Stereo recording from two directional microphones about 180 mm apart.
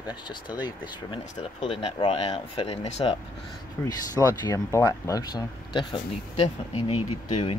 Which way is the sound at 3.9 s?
20° left (ahead or behind).